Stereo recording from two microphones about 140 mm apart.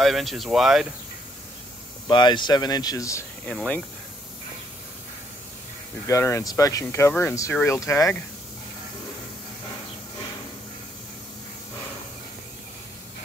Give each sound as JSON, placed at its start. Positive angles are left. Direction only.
{"t": 0.0, "sound": "speech", "side_deg": 0}
{"t": 2.0, "sound": "speech", "side_deg": 35}
{"t": 3.4, "sound": "speech", "side_deg": 10}
{"t": 6.0, "sound": "speech", "side_deg": 20}